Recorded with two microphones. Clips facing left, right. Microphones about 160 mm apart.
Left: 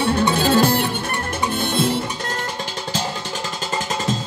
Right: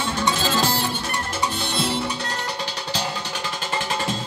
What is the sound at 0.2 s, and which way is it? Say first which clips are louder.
Music: left 5 dB; 55° left (ahead or behind).